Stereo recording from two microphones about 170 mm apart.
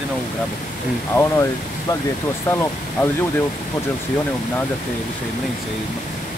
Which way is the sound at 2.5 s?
15° left (ahead or behind).